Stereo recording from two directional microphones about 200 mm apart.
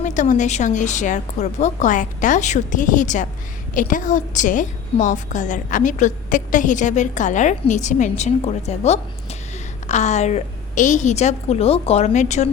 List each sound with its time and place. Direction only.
0.0 s a woman's voice: 40° left (ahead or behind)